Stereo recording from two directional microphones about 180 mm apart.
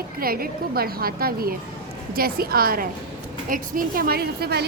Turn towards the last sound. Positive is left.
turn(degrees=-60)  # may be behind; listen again after turning